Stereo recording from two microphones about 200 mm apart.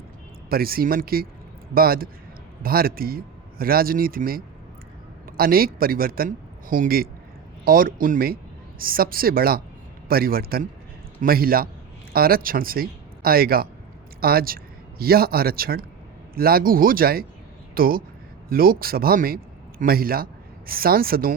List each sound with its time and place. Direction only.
0.5 s a man's voice: 50° right (ahead or behind)